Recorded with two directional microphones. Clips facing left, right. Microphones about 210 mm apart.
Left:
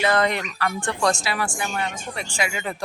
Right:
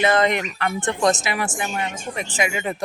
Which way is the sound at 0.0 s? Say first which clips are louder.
Right 2 dB; 20° right (ahead or behind).